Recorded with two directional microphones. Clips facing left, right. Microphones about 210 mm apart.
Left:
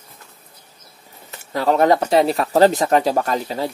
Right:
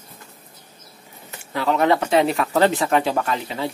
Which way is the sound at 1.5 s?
40° left (ahead or behind).